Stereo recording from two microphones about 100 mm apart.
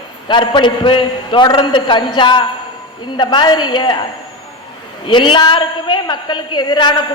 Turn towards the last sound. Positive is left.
turn(degrees=45)  # may be behind; listen again after turning